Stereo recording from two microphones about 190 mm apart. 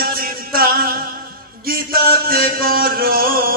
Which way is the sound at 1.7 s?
50° right (ahead or behind).